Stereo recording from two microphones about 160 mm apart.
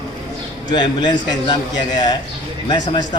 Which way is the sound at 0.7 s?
30° left (ahead or behind).